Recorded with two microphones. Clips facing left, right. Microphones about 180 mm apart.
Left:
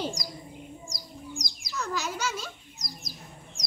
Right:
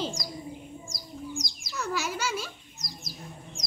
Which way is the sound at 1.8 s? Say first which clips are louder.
Right 1 dB; 10° right (ahead or behind).